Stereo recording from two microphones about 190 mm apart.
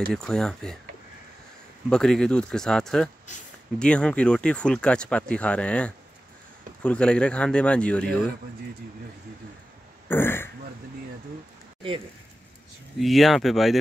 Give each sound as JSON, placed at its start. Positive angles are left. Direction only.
{"t": 0.1, "sound": "speech", "side_deg": 5}
{"t": 1.9, "sound": "speech", "side_deg": 5}
{"t": 10.0, "sound": "speech", "side_deg": 10}
{"t": 13.0, "sound": "speech", "side_deg": 0}